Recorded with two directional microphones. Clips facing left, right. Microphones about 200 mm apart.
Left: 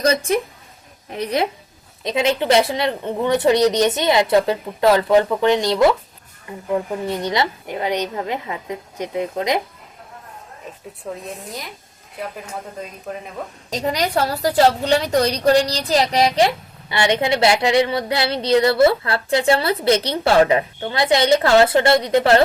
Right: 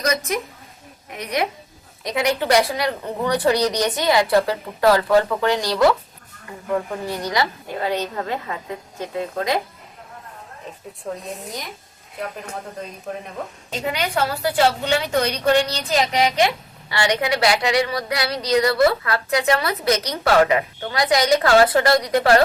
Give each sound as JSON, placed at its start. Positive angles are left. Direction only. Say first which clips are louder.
{"t": 0.0, "sound": "a woman's voice", "louder": "left 5 dB", "side_deg": 30}
{"t": 11.2, "sound": "speech", "louder": "even", "side_deg": 0}
{"t": 13.7, "sound": "a woman's voice", "louder": "left 4 dB", "side_deg": 40}
{"t": 16.9, "sound": "a woman's voice", "louder": "left 3 dB", "side_deg": 25}